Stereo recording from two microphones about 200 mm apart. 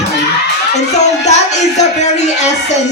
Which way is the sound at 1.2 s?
35° left (ahead or behind).